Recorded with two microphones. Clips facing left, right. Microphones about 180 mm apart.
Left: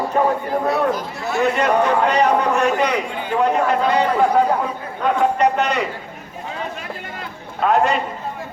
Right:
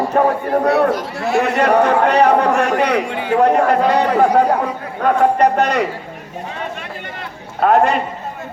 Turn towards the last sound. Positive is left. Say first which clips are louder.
# right 4 dB
turn(degrees=-55)  # may be behind; listen again after turning